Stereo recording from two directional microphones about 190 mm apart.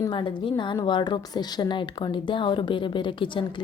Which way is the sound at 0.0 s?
25° left (ahead or behind).